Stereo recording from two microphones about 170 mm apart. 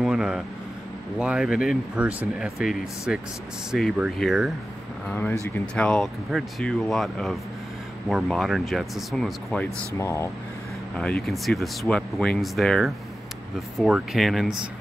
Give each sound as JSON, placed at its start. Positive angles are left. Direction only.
{"t": 0.0, "sound": "vehicle", "side_deg": -5}
{"t": 1.1, "sound": "speech", "side_deg": -5}
{"t": 5.0, "sound": "speech", "side_deg": 10}
{"t": 9.9, "sound": "speech", "side_deg": 15}
{"t": 11.0, "sound": "speech", "side_deg": 5}